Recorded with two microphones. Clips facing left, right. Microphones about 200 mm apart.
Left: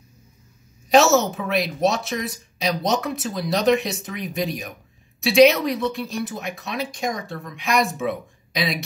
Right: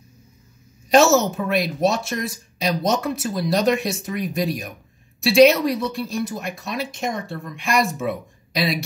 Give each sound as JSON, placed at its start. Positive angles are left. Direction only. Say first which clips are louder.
{"t": 0.8, "sound": "speech", "louder": "right 1 dB", "side_deg": 0}